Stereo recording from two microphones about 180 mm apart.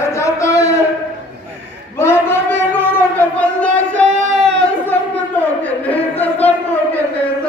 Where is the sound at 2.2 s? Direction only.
10° left (ahead or behind).